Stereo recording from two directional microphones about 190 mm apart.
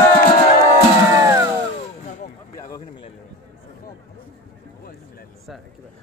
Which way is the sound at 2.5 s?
20° left (ahead or behind).